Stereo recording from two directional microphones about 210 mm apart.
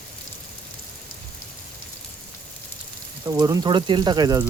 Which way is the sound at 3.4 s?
20° right (ahead or behind).